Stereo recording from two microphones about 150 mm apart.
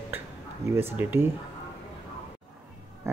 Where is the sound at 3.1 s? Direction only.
20° right (ahead or behind).